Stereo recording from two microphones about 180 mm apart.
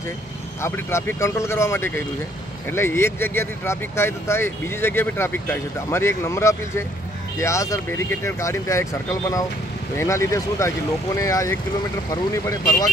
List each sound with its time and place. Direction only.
0.6 s speech: 15° left (ahead or behind)